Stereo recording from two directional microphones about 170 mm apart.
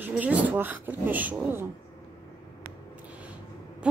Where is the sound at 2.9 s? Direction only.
10° right (ahead or behind).